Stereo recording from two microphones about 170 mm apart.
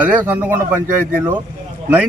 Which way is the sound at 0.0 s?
10° right (ahead or behind).